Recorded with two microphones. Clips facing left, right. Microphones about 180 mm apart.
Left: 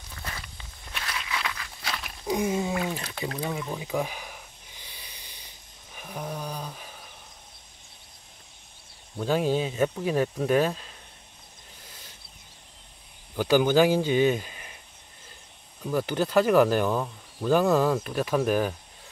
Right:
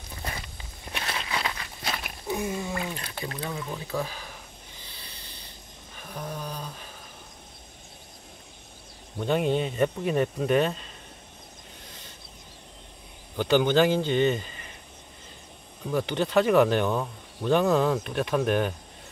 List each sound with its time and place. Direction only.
0.9 s walk: 30° right (ahead or behind)
2.2 s a sound: 15° left (ahead or behind)
2.7 s speech: 5° left (ahead or behind)
4.8 s a sound: 15° left (ahead or behind)
9.2 s speech: centre (ahead or behind)
13.4 s speech: 5° left (ahead or behind)
15.9 s speech: 5° left (ahead or behind)